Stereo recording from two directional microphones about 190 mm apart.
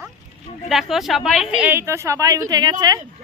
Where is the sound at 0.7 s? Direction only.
Centre (ahead or behind); by 3.0 s 20° right (ahead or behind).